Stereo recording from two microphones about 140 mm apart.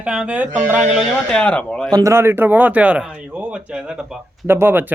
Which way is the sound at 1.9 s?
25° right (ahead or behind).